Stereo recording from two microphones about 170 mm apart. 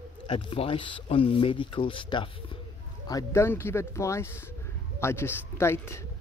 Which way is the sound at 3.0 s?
20° left (ahead or behind).